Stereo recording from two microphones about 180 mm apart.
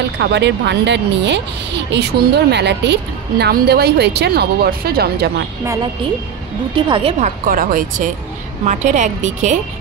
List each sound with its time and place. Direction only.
0.2 s speech: 75° right (ahead or behind)
6.7 s a woman's voice: 30° right (ahead or behind)